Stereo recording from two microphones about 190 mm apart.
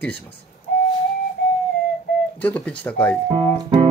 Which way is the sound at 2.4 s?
5° left (ahead or behind).